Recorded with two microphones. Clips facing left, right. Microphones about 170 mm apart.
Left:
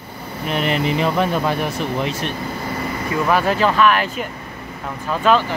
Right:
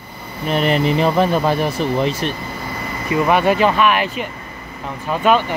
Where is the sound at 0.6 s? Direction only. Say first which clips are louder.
Right 3 dB; 35° right (ahead or behind).